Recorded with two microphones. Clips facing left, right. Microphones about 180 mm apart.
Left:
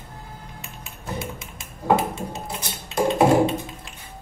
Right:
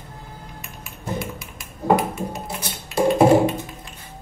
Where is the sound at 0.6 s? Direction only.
25° left (ahead or behind).